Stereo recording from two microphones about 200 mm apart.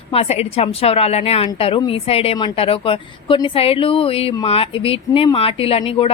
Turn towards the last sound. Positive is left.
turn(degrees=30)  # may be behind; listen again after turning